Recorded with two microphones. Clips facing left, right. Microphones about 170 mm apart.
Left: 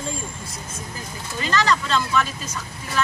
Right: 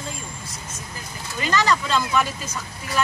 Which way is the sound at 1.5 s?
5° right (ahead or behind).